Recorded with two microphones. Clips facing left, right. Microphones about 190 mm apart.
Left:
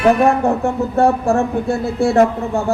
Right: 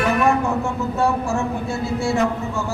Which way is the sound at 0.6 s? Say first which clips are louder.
Left 6 dB; 60° left (ahead or behind).